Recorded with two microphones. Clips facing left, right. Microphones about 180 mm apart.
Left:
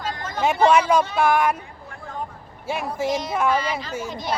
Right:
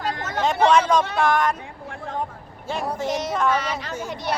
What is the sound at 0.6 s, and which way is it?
Speech, 10° left (ahead or behind).